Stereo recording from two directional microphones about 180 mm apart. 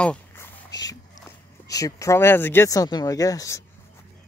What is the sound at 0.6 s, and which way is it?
Speech, 20° left (ahead or behind).